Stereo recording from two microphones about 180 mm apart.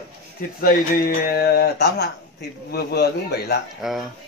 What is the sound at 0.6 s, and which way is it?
Speech, 55° left (ahead or behind).